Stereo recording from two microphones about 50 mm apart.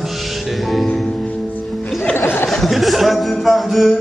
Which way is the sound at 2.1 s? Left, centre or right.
Left.